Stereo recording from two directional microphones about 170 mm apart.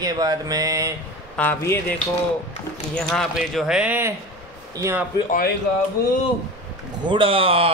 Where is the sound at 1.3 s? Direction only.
10° left (ahead or behind); by 4.1 s 10° right (ahead or behind).